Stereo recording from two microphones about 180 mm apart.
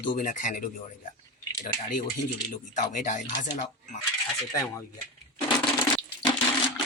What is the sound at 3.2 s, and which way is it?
Speech, 25° left (ahead or behind).